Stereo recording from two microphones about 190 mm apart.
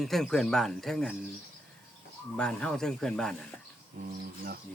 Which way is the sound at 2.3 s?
5° left (ahead or behind).